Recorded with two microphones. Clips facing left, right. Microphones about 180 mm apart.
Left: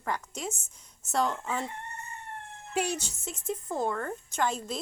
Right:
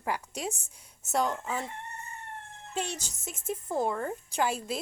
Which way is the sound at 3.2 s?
5° right (ahead or behind).